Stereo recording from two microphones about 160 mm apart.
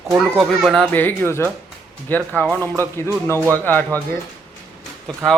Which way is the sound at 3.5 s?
10° left (ahead or behind).